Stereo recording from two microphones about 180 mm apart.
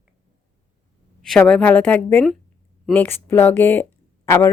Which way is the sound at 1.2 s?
5° left (ahead or behind).